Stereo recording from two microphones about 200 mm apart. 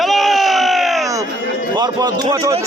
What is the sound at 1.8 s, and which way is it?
Speech, 20° right (ahead or behind).